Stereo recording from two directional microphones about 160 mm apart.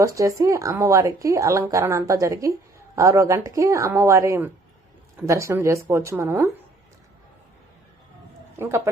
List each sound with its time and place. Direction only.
0.0 s a woman's voice: 20° right (ahead or behind)
8.5 s speech: 15° right (ahead or behind)